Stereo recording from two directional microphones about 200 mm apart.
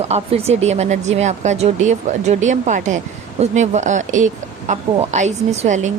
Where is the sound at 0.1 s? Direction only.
30° right (ahead or behind).